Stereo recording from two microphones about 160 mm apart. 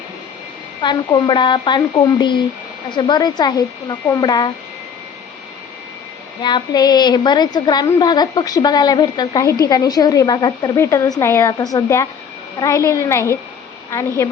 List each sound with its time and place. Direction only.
0.8 s a woman's voice: 30° left (ahead or behind)
6.4 s a woman's voice: 25° left (ahead or behind)